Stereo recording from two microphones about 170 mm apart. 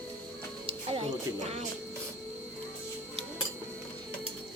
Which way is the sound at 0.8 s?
35° right (ahead or behind).